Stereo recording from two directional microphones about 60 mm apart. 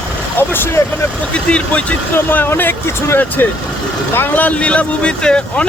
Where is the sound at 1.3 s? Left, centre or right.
Centre.